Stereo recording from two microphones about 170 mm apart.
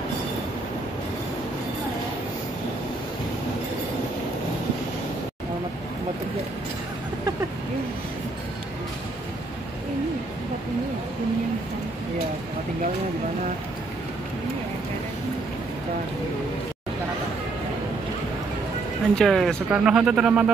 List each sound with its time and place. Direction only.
19.1 s speech: centre (ahead or behind)